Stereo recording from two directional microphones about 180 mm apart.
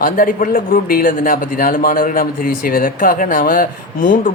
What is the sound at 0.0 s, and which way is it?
A man's voice, 50° left (ahead or behind).